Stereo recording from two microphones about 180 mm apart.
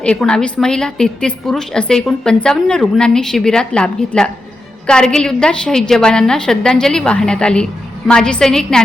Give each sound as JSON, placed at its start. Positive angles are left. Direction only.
{"t": 0.0, "sound": "a woman's voice", "side_deg": 5}